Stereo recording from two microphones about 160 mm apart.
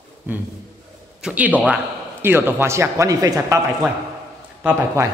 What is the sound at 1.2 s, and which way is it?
A man's voice, 5° right (ahead or behind).